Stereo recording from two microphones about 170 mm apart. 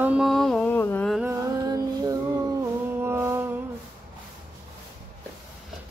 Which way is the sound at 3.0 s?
15° right (ahead or behind).